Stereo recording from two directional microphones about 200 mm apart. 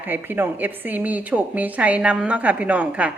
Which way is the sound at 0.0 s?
10° right (ahead or behind).